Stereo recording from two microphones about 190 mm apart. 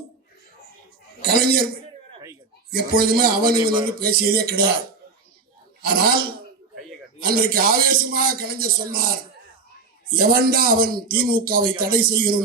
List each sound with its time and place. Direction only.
1.2 s a man's voice: 55° right (ahead or behind)
2.6 s a man's voice: 55° right (ahead or behind)
3.5 s a man's voice: 20° right (ahead or behind)
4.0 s speech: 55° right (ahead or behind)
5.8 s a man's voice: 55° right (ahead or behind)
10.2 s a man's voice: 50° right (ahead or behind)